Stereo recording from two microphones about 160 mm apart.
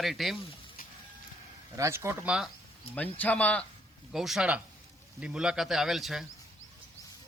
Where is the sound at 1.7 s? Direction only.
20° right (ahead or behind).